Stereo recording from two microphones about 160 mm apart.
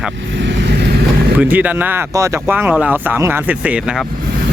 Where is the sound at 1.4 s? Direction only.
10° right (ahead or behind).